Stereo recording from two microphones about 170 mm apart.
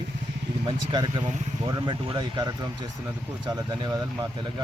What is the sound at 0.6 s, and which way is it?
Speech, 25° right (ahead or behind).